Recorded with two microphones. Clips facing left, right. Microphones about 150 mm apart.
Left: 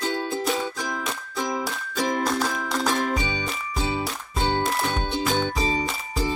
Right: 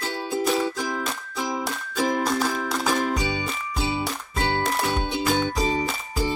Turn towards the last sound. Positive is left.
turn(degrees=-5)  # may be behind; listen again after turning